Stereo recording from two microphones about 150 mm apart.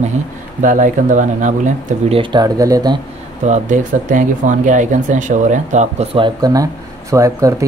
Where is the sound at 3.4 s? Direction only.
55° right (ahead or behind).